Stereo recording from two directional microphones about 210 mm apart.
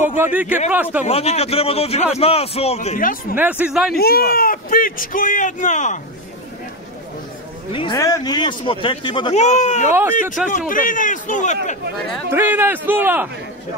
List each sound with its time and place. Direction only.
0.2 s a man's voice: 5° right (ahead or behind)
1.0 s speech: 30° left (ahead or behind)
3.3 s a man's voice: 5° right (ahead or behind)
3.9 s a man's voice: 45° left (ahead or behind)
7.7 s speech: 20° left (ahead or behind)
10.4 s speech: 5° right (ahead or behind)
10.7 s a man's voice: 40° left (ahead or behind)
12.3 s a man's voice: 10° right (ahead or behind)